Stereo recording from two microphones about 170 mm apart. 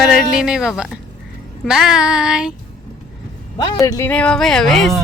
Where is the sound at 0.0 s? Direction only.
Centre (ahead or behind).